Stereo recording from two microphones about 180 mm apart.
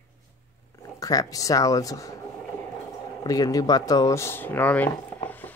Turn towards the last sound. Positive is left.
turn(degrees=10)  # may be behind; listen again after turning